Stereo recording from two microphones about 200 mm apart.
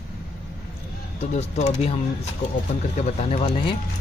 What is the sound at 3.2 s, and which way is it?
Speech, 30° left (ahead or behind).